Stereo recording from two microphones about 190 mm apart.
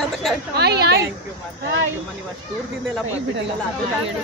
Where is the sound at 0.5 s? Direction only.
60° right (ahead or behind).